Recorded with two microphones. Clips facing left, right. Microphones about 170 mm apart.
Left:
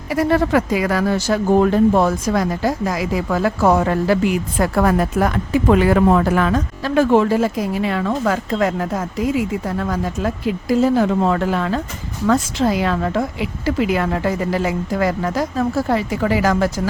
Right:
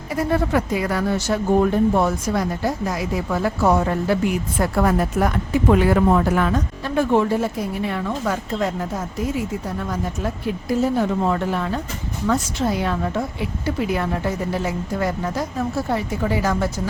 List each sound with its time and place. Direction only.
0.1 s speech: 90° left